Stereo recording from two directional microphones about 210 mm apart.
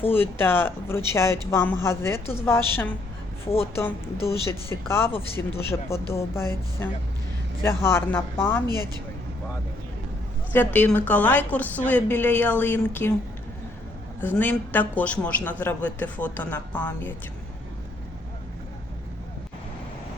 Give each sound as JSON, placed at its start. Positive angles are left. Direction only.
{"t": 0.0, "sound": "a man's voice", "side_deg": 10}
{"t": 4.7, "sound": "a man's voice", "side_deg": 10}
{"t": 8.6, "sound": "speech", "side_deg": -20}
{"t": 10.5, "sound": "a man's voice", "side_deg": 10}
{"t": 14.2, "sound": "a man's voice", "side_deg": 10}